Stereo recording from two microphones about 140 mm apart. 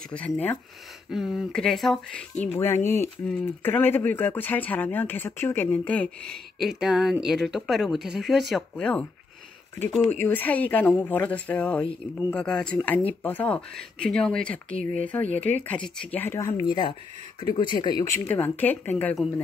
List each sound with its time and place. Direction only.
0.1 s speech: 10° left (ahead or behind)
1.1 s speech: centre (ahead or behind)
2.4 s speech: 15° left (ahead or behind)
10.2 s speech: 10° left (ahead or behind)